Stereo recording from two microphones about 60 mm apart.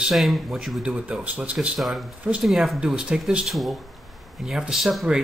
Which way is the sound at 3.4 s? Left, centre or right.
Centre.